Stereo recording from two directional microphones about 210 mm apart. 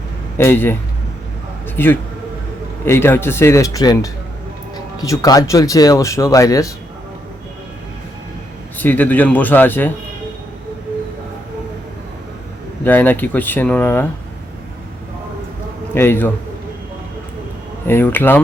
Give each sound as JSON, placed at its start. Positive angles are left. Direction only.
{"t": 0.3, "sound": "speech", "side_deg": 10}
{"t": 8.8, "sound": "speech", "side_deg": 10}
{"t": 12.8, "sound": "speech", "side_deg": 10}
{"t": 16.0, "sound": "speech", "side_deg": 10}
{"t": 17.8, "sound": "speech", "side_deg": 10}